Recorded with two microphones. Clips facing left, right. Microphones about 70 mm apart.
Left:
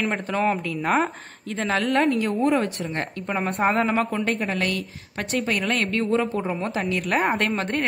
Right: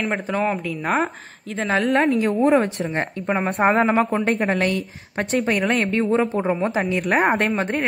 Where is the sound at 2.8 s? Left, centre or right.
Right.